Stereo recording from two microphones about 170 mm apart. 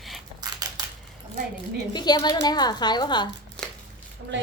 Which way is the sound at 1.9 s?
25° left (ahead or behind).